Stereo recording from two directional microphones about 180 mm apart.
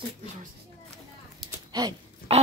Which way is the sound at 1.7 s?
25° right (ahead or behind).